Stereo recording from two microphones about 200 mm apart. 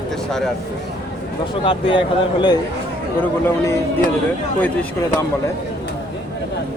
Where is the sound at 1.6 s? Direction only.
25° left (ahead or behind).